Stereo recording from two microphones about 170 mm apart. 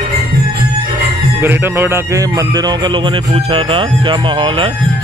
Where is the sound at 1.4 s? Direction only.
10° right (ahead or behind); by 4.7 s 30° right (ahead or behind).